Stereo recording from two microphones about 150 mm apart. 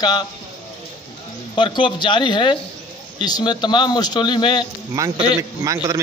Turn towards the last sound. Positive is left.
turn(degrees=-20)  # may be behind; listen again after turning